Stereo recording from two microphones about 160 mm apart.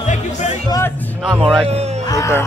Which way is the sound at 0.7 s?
15° left (ahead or behind).